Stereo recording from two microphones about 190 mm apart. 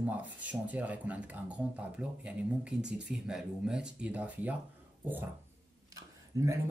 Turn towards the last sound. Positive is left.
turn(degrees=-15)  # may be behind; listen again after turning